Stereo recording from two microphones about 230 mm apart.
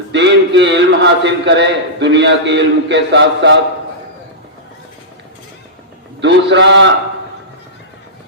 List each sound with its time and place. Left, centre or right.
0.1 s a man's voice: right
6.2 s a man's voice: right